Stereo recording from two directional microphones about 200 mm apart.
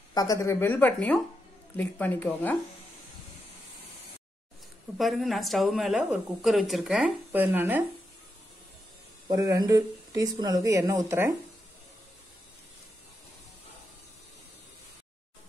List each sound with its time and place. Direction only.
0.1 s speech: 15° left (ahead or behind)
4.9 s a woman's voice: centre (ahead or behind)
9.3 s speech: 20° right (ahead or behind)